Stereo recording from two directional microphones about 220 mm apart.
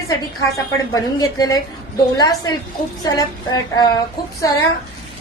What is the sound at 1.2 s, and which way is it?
A woman's voice, 15° left (ahead or behind).